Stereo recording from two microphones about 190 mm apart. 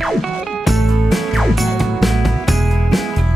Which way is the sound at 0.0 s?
Centre (ahead or behind).